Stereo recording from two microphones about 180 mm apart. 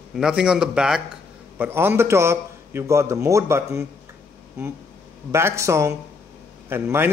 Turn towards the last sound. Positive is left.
turn(degrees=-10)  # may be behind; listen again after turning